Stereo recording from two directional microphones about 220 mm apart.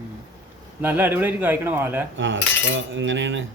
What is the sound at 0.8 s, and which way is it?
A man's voice, 10° right (ahead or behind).